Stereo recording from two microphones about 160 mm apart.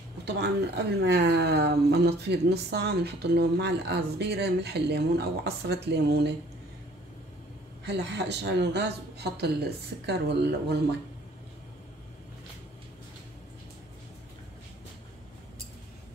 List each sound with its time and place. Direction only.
0.2 s speech: 90° right
7.8 s speech: 90° right